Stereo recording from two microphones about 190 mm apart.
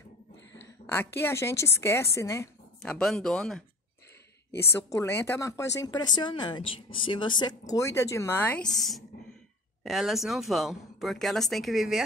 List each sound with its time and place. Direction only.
0.6 s speech: 10° left (ahead or behind)
2.8 s speech: centre (ahead or behind)
4.6 s speech: 15° left (ahead or behind)